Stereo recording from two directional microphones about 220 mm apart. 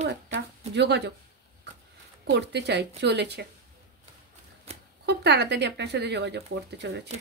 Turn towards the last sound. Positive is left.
turn(degrees=-50)  # may be behind; listen again after turning